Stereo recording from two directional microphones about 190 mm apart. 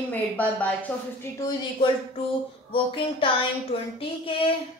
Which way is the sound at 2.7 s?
25° left (ahead or behind).